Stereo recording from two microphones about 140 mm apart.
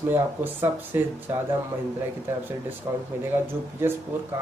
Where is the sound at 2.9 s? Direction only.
25° right (ahead or behind).